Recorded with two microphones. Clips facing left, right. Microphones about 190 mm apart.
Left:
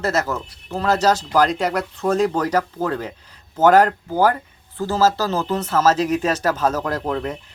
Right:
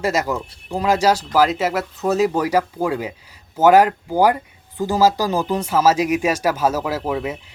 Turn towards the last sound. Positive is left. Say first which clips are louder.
# right 1 dB
turn(degrees=-5)  # may be behind; listen again after turning